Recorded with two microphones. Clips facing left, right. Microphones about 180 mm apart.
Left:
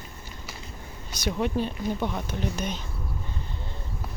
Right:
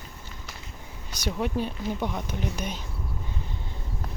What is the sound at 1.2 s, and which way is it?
Speech, 5° right (ahead or behind).